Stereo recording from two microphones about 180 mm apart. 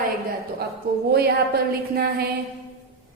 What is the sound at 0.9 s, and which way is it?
A woman's voice, 60° right (ahead or behind).